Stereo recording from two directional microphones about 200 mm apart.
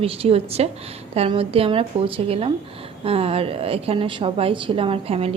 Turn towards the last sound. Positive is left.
turn(degrees=-30)  # may be behind; listen again after turning